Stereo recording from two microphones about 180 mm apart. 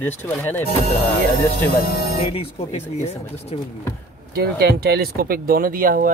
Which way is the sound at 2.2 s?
35° left (ahead or behind).